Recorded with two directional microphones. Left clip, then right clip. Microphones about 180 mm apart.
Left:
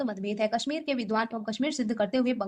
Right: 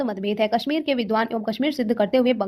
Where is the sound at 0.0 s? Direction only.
40° right (ahead or behind).